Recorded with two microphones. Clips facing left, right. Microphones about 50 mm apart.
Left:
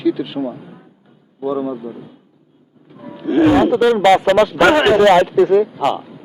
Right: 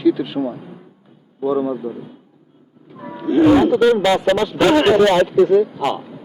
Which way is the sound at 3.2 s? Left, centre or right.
Left.